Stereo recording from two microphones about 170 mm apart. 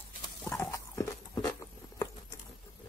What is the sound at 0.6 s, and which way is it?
Horse, 15° left (ahead or behind).